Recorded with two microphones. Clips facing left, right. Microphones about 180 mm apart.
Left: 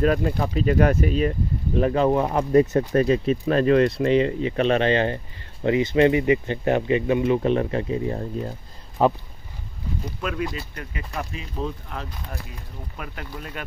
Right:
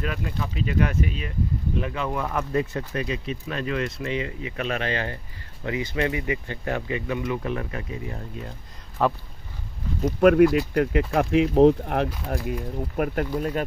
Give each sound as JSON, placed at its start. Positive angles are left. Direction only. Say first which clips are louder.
{"t": 0.0, "sound": "speech", "louder": "left 9 dB", "side_deg": 40}
{"t": 10.2, "sound": "speech", "louder": "right 14 dB", "side_deg": -65}
{"t": 12.3, "sound": "speech", "louder": "right 10 dB", "side_deg": -55}